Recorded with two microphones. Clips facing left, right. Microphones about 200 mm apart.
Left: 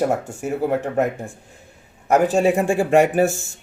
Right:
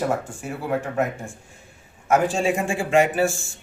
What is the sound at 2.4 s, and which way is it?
Speech, 40° left (ahead or behind).